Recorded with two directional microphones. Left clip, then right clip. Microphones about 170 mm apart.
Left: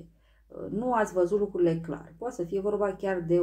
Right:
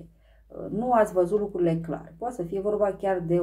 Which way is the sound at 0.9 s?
30° left (ahead or behind).